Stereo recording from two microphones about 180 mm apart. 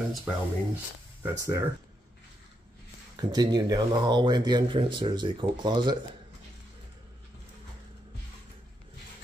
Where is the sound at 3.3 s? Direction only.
20° right (ahead or behind).